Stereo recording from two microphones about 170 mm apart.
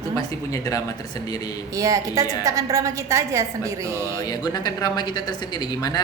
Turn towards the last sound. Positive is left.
turn(degrees=25)  # may be behind; listen again after turning